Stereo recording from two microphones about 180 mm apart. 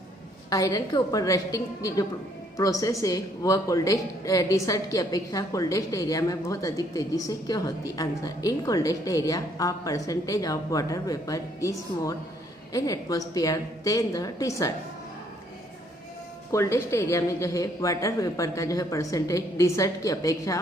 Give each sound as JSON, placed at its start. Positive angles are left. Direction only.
{"t": 0.5, "sound": "a woman's voice", "side_deg": 20}
{"t": 12.7, "sound": "a woman's voice", "side_deg": 20}
{"t": 16.5, "sound": "a woman's voice", "side_deg": 15}